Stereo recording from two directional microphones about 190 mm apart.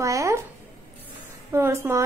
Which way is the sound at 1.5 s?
15° right (ahead or behind).